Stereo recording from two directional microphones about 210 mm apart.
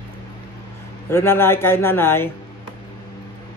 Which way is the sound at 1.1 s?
10° left (ahead or behind).